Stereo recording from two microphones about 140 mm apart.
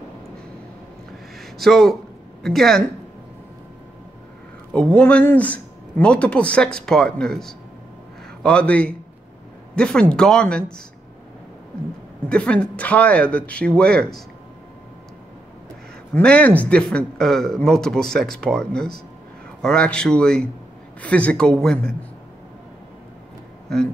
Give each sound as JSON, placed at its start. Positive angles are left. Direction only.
{"t": 1.4, "sound": "speech", "side_deg": 0}
{"t": 4.7, "sound": "speech", "side_deg": 10}
{"t": 12.3, "sound": "speech", "side_deg": 10}
{"t": 16.2, "sound": "speech", "side_deg": 10}